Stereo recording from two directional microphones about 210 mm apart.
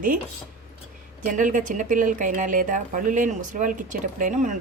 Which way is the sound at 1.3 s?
40° right (ahead or behind).